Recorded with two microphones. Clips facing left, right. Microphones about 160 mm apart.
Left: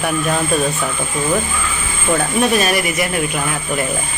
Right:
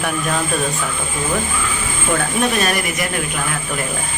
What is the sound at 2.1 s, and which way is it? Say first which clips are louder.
Speech: left 3 dB; 5° left (ahead or behind).